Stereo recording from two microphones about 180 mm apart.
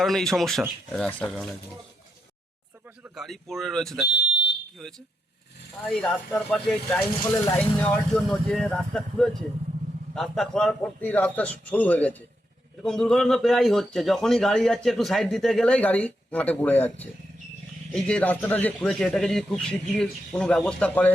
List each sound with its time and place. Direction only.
0.0 s speech: centre (ahead or behind)
3.0 s speech: centre (ahead or behind)
4.1 s smoke detector: 70° left (ahead or behind)
4.8 s a man's voice: 5° left (ahead or behind)